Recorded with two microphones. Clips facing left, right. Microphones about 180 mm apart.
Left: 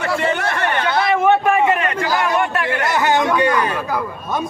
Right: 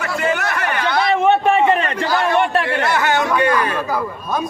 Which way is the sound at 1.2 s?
25° right (ahead or behind).